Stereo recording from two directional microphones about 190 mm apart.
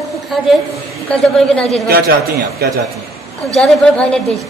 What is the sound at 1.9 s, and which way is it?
Speech, 50° right (ahead or behind).